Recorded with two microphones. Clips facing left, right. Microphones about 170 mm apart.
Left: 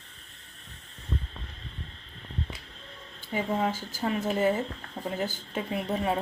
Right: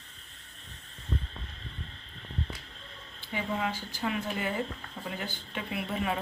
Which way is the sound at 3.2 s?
45° left (ahead or behind).